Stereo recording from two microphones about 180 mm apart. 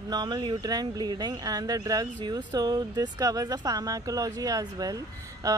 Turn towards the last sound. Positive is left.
turn(degrees=-20)  # may be behind; listen again after turning